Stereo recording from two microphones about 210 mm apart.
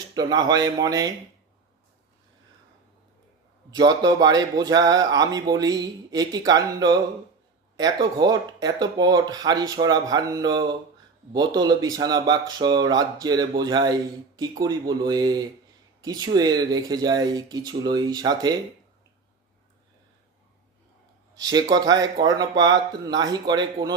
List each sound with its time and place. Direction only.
0.1 s speech: 20° right (ahead or behind)
3.8 s speech: 20° right (ahead or behind)
21.3 s speech: 20° right (ahead or behind)